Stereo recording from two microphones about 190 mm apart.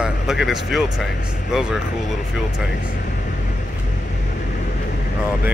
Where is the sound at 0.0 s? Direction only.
5° right (ahead or behind).